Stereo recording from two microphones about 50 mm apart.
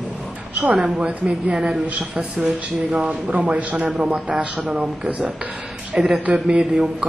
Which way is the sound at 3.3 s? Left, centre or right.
Right.